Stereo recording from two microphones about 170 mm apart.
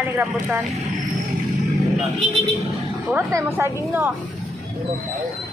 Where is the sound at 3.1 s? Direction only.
15° right (ahead or behind).